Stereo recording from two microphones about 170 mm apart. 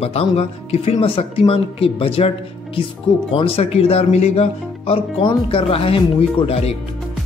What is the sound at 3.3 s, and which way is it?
A woman's voice, 35° left (ahead or behind).